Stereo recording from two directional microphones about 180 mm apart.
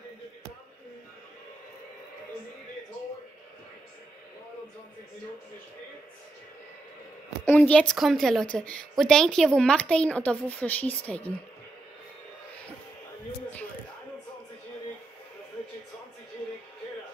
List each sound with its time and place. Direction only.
7.4 s a woman's voice: 10° left (ahead or behind)